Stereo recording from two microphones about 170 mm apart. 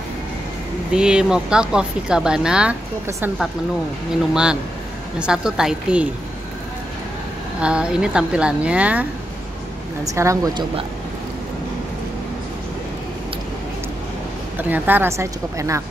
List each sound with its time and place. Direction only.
0.9 s speech: 5° right (ahead or behind)
4.3 s speech: 5° right (ahead or behind)
7.6 s speech: 5° right (ahead or behind)
10.1 s speech: 20° right (ahead or behind)
14.6 s speech: 10° right (ahead or behind)